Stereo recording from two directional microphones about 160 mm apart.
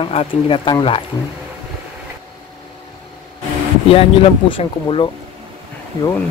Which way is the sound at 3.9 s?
35° left (ahead or behind).